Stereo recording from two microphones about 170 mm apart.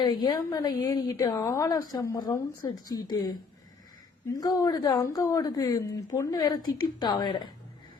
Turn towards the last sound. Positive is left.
turn(degrees=25)  # may be behind; listen again after turning